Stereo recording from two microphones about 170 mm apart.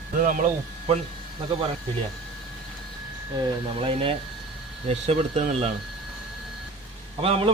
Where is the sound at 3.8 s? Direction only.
30° right (ahead or behind).